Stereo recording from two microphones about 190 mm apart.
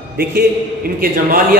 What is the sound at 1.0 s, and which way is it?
Speech, 50° right (ahead or behind).